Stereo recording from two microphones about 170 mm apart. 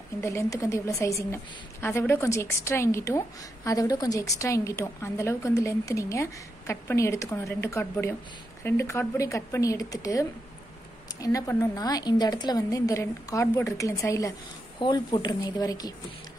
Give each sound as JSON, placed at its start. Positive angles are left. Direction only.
{"t": 0.2, "sound": "a woman's voice", "side_deg": 15}